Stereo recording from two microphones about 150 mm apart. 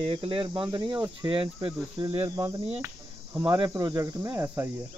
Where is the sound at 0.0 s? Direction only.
35° right (ahead or behind).